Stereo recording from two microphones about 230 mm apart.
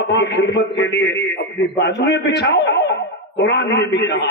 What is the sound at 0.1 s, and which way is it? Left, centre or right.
A man's voice, left.